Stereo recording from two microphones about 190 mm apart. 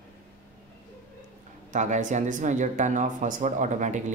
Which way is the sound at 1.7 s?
40° right (ahead or behind).